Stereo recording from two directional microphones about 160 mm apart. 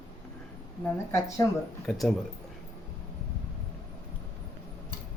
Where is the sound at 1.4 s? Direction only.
20° left (ahead or behind).